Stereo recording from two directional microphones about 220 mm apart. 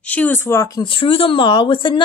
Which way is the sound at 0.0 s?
5° left (ahead or behind).